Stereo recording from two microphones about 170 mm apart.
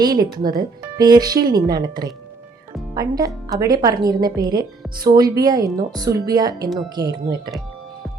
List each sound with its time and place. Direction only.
0.0 s speech: 25° right (ahead or behind)